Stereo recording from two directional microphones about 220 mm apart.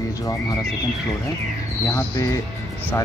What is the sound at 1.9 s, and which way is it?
Speech, 15° left (ahead or behind).